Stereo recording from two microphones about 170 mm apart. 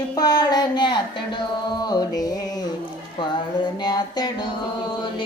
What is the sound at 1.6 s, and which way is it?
Music, 25° left (ahead or behind).